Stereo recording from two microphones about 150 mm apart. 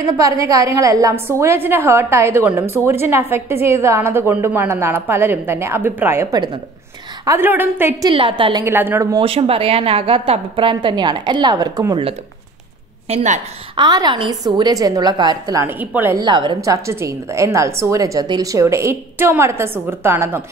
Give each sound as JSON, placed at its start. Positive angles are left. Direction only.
{"t": 0.0, "sound": "a woman's voice", "side_deg": -20}
{"t": 8.0, "sound": "a woman's voice", "side_deg": -35}
{"t": 8.6, "sound": "a woman's voice", "side_deg": -15}
{"t": 9.2, "sound": "a woman's voice", "side_deg": -40}
{"t": 13.1, "sound": "a woman's voice", "side_deg": -50}
{"t": 13.7, "sound": "a woman's voice", "side_deg": -30}
{"t": 15.8, "sound": "a woman's voice", "side_deg": -10}
{"t": 16.2, "sound": "a woman's voice", "side_deg": -30}